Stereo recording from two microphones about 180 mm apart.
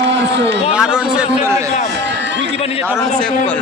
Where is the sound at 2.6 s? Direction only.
30° left (ahead or behind).